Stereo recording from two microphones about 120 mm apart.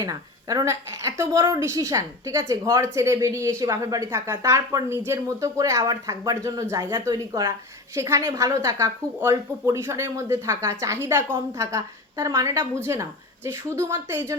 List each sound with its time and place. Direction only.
0.0 s a woman's voice: 30° right (ahead or behind)
7.9 s a woman's voice: 25° right (ahead or behind)